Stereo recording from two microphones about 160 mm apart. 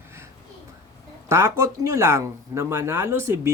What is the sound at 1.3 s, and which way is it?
Speech, 20° right (ahead or behind).